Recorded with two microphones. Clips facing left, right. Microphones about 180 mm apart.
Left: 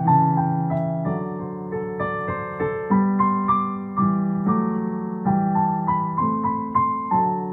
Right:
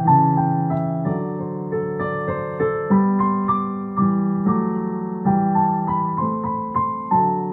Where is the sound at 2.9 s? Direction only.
50° right (ahead or behind).